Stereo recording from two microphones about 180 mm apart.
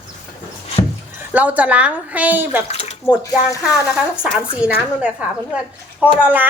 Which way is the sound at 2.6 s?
35° left (ahead or behind).